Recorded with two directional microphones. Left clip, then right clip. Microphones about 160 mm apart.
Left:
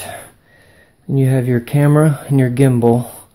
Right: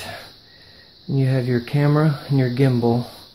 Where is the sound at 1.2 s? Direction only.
40° left (ahead or behind).